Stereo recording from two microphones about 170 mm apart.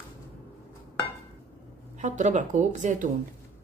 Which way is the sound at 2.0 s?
45° right (ahead or behind).